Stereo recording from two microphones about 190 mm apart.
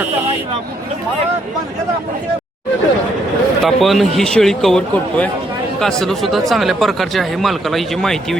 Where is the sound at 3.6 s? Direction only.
Centre (ahead or behind).